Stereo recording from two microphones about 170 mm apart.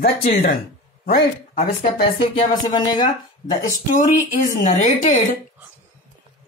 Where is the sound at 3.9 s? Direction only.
45° left (ahead or behind).